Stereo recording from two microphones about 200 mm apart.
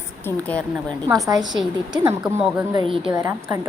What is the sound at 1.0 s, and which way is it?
A woman's voice, 15° right (ahead or behind).